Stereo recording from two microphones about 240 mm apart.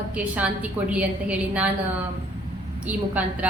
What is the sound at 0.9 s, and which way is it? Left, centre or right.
Speech, centre.